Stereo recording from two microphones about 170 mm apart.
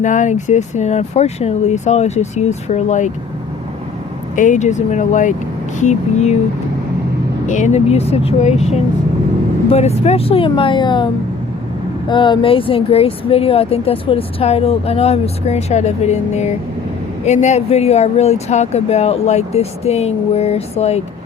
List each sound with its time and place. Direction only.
0.0 s speech: 45° left (ahead or behind)
4.4 s speech: 45° left (ahead or behind)
7.4 s speech: 45° left (ahead or behind)